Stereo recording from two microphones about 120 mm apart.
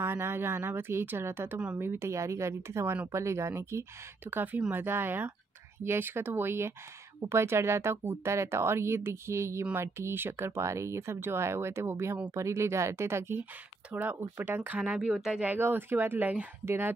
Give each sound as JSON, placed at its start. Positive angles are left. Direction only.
{"t": 0.0, "sound": "speech", "side_deg": -20}